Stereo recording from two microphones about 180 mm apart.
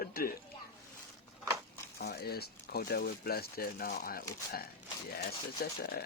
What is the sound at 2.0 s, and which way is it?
Speech, 60° left (ahead or behind).